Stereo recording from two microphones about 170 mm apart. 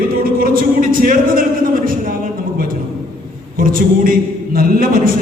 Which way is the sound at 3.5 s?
55° right (ahead or behind).